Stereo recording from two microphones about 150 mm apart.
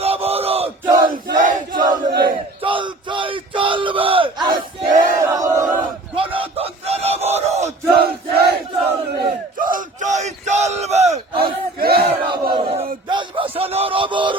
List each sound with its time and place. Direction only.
0.0 s battle cry: 40° right (ahead or behind)
0.9 s battle cry: 25° right (ahead or behind)
4.8 s battle cry: 60° right (ahead or behind)
5.2 s battle cry: 20° right (ahead or behind)
6.1 s battle cry: 35° right (ahead or behind)
7.9 s battle cry: 90° right
9.6 s a sound: 65° right (ahead or behind); by 11.2 s 45° right (ahead or behind)
11.3 s battle cry: 85° right
12.3 s battle cry: 40° right (ahead or behind)
13.1 s music: 35° right (ahead or behind)